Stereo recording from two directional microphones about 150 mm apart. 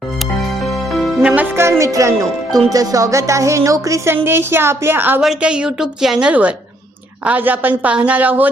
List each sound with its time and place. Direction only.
0.9 s music: centre (ahead or behind)
1.4 s a woman's voice: 15° right (ahead or behind)